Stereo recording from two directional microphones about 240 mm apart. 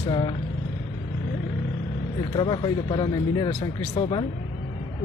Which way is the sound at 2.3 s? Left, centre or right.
Centre.